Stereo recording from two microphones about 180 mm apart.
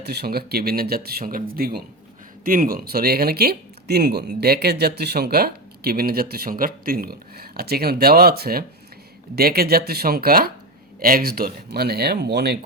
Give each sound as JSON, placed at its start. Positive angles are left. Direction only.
{"t": 0.0, "sound": "speech", "side_deg": -60}